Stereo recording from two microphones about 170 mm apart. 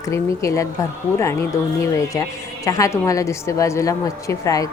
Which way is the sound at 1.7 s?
15° left (ahead or behind).